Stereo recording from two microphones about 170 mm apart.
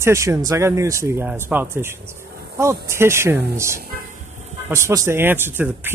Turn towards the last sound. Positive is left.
turn(degrees=-10)  # may be behind; listen again after turning